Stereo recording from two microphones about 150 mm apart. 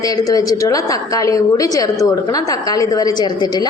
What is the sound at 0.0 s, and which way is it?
A woman's voice, 25° left (ahead or behind).